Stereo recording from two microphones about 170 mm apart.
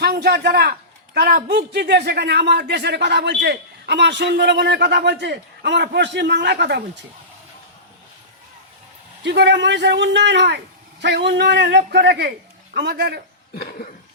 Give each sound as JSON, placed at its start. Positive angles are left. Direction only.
{"t": 0.0, "sound": "a man's voice", "side_deg": -70}
{"t": 9.2, "sound": "a man's voice", "side_deg": -85}
{"t": 11.9, "sound": "a man's voice", "side_deg": -80}
{"t": 13.6, "sound": "cough", "side_deg": 65}